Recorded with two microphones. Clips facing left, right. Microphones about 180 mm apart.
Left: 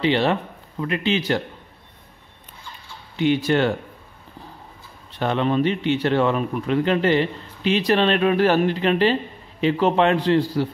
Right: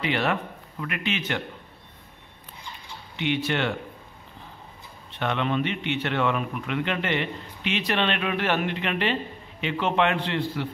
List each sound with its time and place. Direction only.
0.0 s a man's voice: 30° left (ahead or behind)
3.2 s a man's voice: 40° left (ahead or behind)
5.1 s a man's voice: 35° left (ahead or behind)